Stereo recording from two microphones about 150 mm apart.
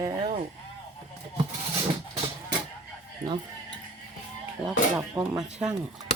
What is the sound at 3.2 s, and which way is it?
Speech, 20° right (ahead or behind).